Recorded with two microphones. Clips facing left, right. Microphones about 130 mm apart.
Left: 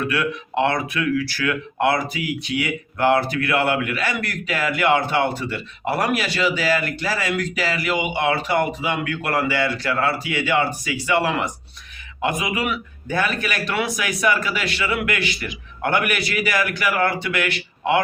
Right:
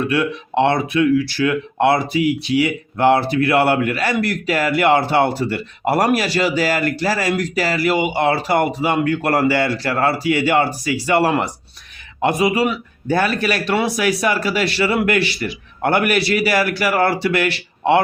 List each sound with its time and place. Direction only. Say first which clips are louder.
0.0 s speech: right 4 dB; 25° right (ahead or behind)